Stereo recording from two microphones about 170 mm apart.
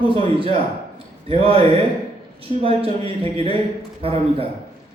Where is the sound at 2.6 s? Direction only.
35° right (ahead or behind).